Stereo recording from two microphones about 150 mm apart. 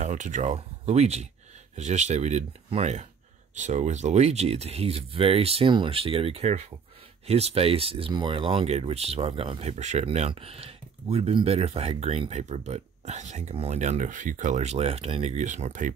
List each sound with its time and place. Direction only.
0.0 s speech: 55° right (ahead or behind)